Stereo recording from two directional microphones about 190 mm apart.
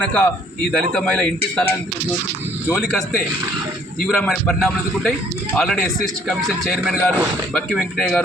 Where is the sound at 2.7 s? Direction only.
Centre (ahead or behind).